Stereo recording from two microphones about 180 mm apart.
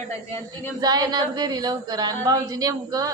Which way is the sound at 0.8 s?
20° right (ahead or behind).